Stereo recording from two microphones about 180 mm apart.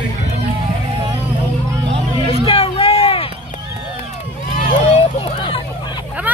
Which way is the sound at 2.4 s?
30° left (ahead or behind).